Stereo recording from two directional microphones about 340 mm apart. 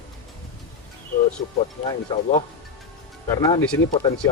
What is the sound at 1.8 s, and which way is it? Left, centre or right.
Speech, centre.